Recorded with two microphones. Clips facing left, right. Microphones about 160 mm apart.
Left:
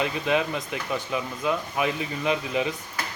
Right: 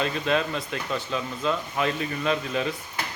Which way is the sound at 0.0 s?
15° left (ahead or behind).